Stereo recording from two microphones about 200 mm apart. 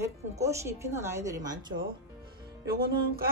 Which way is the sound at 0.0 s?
15° right (ahead or behind).